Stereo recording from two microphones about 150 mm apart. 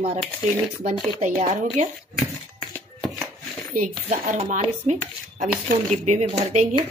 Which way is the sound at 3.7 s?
60° right (ahead or behind).